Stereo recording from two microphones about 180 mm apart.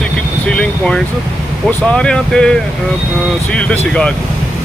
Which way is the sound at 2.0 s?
5° left (ahead or behind).